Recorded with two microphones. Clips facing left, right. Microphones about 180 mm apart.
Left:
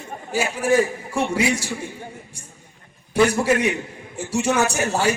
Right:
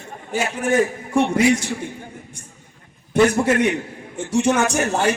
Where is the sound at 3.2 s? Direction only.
10° left (ahead or behind).